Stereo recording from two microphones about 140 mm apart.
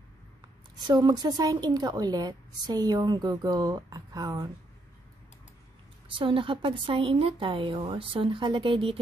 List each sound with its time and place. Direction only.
0.8 s a woman's voice: 30° right (ahead or behind)
6.1 s a woman's voice: 35° right (ahead or behind)